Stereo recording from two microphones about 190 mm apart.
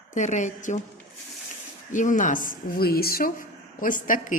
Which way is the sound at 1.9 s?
40° left (ahead or behind).